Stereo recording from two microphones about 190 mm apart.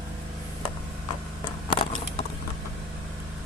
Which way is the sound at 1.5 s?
25° left (ahead or behind).